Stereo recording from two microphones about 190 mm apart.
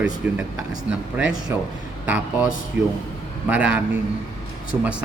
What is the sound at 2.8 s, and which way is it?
Speech, 70° right (ahead or behind).